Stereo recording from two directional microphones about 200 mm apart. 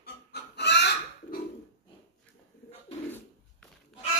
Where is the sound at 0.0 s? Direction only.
55° left (ahead or behind).